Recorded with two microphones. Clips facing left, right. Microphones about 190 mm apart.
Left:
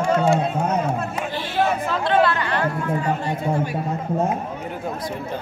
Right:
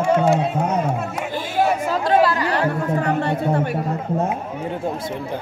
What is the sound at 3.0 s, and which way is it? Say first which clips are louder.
Speech: right 3 dB; 65° right (ahead or behind).